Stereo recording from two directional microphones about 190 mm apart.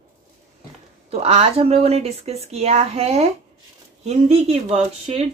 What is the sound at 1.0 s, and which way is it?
Speech, 30° right (ahead or behind).